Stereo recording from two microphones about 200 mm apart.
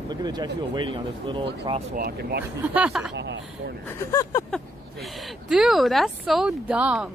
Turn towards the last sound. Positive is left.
turn(degrees=-5)  # may be behind; listen again after turning